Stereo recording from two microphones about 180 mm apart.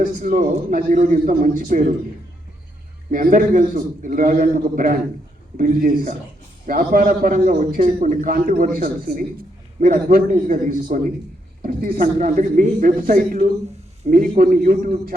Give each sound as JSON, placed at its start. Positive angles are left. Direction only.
{"t": 0.2, "sound": "a man's voice", "side_deg": -50}
{"t": 3.1, "sound": "a man's voice", "side_deg": -50}